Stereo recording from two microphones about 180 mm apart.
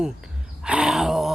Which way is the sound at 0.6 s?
5° right (ahead or behind).